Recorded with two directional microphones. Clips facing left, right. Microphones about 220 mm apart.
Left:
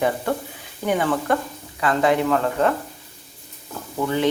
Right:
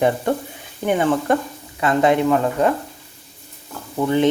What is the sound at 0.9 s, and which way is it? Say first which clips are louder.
Speech: right 3 dB; 20° right (ahead or behind).